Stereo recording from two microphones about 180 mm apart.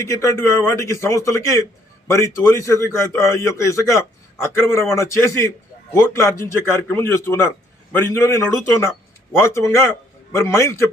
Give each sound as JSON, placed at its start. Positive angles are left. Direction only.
{"t": 0.0, "sound": "a man's voice", "side_deg": 15}